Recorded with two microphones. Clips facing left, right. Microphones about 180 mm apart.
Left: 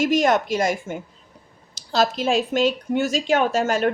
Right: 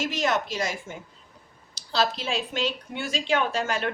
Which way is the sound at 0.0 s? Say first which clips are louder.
Left 8 dB; 50° left (ahead or behind).